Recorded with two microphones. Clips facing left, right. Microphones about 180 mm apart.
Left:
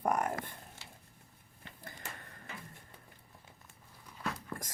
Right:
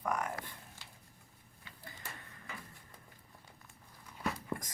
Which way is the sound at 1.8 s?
50° left (ahead or behind).